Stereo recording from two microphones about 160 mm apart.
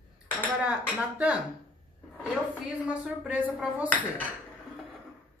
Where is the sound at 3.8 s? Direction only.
10° left (ahead or behind).